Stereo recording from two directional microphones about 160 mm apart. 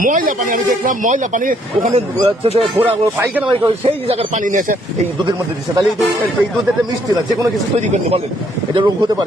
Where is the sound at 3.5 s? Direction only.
30° right (ahead or behind).